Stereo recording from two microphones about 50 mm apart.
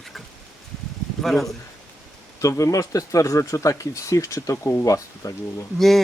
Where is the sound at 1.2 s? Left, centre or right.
Centre.